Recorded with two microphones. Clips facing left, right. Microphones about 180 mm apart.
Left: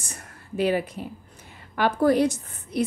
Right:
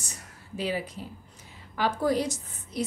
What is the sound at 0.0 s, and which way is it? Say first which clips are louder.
A woman's voice: left 3 dB; 55° left (ahead or behind).